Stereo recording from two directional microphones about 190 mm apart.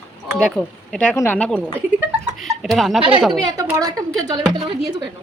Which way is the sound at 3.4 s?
20° right (ahead or behind).